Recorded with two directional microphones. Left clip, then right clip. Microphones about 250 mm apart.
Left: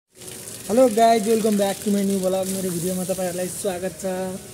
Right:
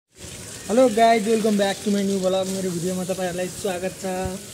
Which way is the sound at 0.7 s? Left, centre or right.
Centre.